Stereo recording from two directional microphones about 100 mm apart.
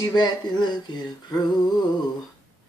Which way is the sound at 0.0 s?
45° left (ahead or behind).